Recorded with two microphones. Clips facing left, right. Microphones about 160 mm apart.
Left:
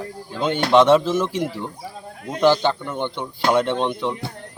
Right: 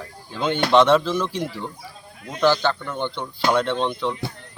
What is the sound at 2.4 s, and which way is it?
Speech, 20° left (ahead or behind).